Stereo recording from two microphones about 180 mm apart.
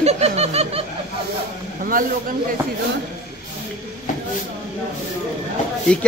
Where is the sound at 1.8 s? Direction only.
50° right (ahead or behind).